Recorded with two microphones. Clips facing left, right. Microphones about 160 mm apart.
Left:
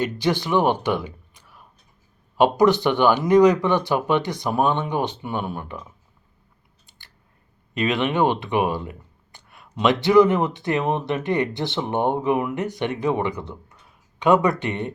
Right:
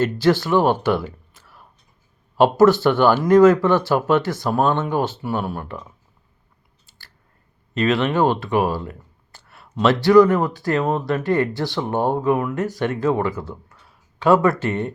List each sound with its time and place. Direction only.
0.0 s speech: 15° left (ahead or behind)
5.7 s speech: 10° right (ahead or behind)
7.7 s speech: 15° left (ahead or behind)
8.5 s a sound: 15° left (ahead or behind)
9.8 s speech: 20° left (ahead or behind)